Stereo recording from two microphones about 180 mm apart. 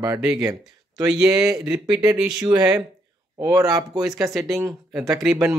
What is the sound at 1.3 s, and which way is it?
Speech, 20° right (ahead or behind).